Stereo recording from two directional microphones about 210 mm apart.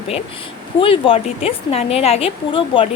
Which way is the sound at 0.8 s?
25° left (ahead or behind).